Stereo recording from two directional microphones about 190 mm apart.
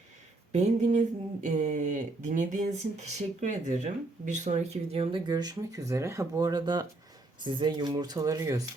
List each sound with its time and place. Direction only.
0.5 s speech: 35° right (ahead or behind); by 8.6 s 15° right (ahead or behind)